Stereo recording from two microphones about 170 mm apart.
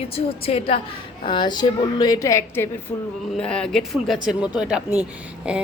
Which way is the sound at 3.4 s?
5° left (ahead or behind).